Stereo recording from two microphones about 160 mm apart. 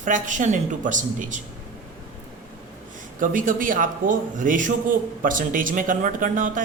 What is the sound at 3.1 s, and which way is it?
A man's voice, 55° right (ahead or behind).